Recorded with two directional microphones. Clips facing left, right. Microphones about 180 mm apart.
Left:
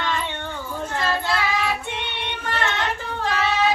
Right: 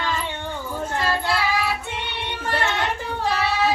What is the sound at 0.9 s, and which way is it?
Child singing, 10° right (ahead or behind).